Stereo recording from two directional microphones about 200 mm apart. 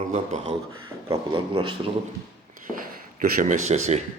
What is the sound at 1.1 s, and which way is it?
Speech, 25° right (ahead or behind).